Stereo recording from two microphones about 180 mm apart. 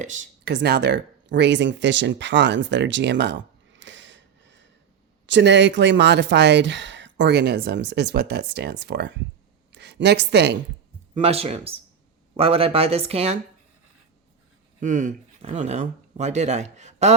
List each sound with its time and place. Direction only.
0.0 s speech: 45° right (ahead or behind)
0.4 s a woman's voice: 65° right (ahead or behind)
11.1 s speech: 35° right (ahead or behind)
14.8 s speech: 45° right (ahead or behind)